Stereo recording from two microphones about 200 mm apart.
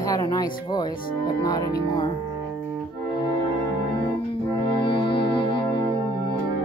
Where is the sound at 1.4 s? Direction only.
20° left (ahead or behind).